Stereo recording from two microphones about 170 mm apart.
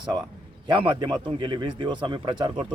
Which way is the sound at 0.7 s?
30° right (ahead or behind).